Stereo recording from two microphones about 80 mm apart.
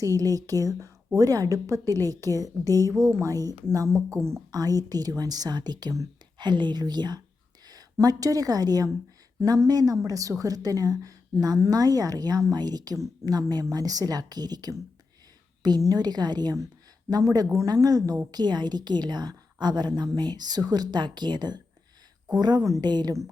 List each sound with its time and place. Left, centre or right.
0.0 s a woman's voice: right
4.5 s a woman's voice: right
7.9 s a woman's voice: right
15.8 s a woman's voice: right
18.3 s a woman's voice: right